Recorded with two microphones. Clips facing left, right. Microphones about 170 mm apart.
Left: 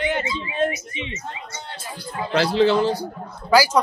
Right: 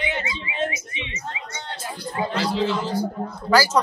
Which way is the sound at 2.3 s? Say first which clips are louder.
Left 8 dB; 70° left (ahead or behind).